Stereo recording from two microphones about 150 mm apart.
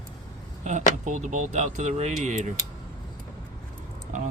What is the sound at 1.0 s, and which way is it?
Speech, 55° right (ahead or behind).